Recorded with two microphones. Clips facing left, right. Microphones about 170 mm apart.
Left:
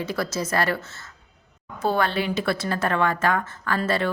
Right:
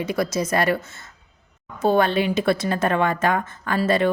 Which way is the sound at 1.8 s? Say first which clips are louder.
Right 5 dB; 20° right (ahead or behind).